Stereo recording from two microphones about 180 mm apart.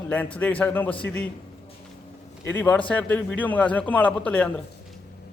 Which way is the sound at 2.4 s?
10° left (ahead or behind).